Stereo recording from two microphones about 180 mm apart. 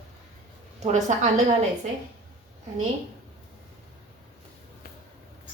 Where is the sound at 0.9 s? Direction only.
40° right (ahead or behind).